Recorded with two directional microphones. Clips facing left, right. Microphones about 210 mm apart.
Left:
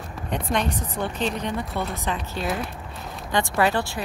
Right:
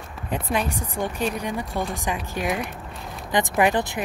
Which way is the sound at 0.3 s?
5° right (ahead or behind).